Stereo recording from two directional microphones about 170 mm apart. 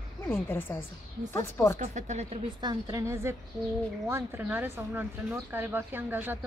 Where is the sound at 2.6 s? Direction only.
20° right (ahead or behind).